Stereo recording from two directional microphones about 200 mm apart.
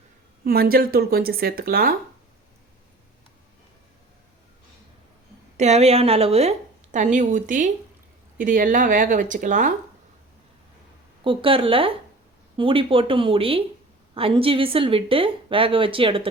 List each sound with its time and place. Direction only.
0.4 s speech: 50° right (ahead or behind)
5.5 s speech: 35° right (ahead or behind)
11.2 s a woman's voice: 25° right (ahead or behind)